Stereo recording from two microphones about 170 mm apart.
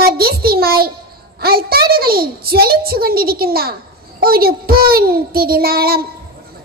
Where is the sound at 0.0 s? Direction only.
65° right (ahead or behind).